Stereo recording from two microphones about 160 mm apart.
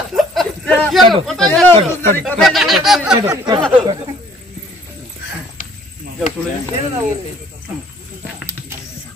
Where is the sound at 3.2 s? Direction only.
25° right (ahead or behind).